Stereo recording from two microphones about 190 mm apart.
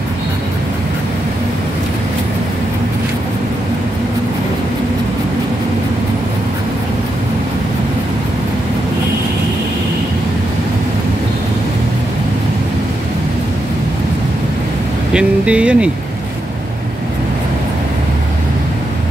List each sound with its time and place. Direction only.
15.1 s speech: 5° right (ahead or behind)